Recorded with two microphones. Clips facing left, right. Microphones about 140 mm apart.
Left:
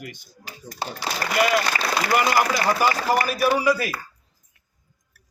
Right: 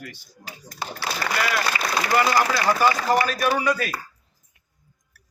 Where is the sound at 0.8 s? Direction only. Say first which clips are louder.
Left 1 dB; 20° left (ahead or behind).